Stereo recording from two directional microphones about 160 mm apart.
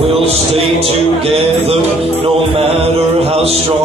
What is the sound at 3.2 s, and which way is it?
Music, 40° right (ahead or behind).